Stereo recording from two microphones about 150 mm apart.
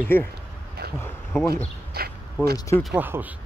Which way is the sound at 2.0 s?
90° right.